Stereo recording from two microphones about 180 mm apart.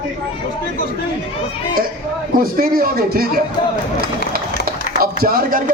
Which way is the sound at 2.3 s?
50° right (ahead or behind).